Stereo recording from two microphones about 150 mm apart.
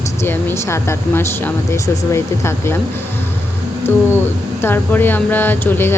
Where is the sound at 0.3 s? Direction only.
15° left (ahead or behind).